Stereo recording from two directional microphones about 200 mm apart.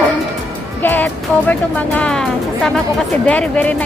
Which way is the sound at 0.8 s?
10° left (ahead or behind).